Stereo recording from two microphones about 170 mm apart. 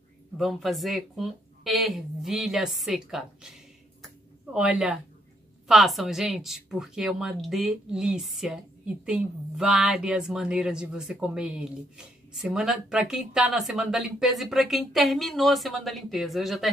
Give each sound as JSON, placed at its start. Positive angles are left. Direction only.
{"t": 0.4, "sound": "speech", "side_deg": 0}
{"t": 4.6, "sound": "speech", "side_deg": -5}